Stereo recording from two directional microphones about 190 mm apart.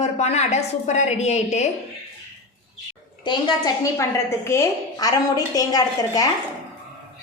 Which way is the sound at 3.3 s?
20° left (ahead or behind).